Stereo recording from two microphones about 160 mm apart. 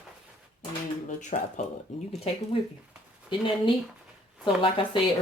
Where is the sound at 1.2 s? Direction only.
50° left (ahead or behind).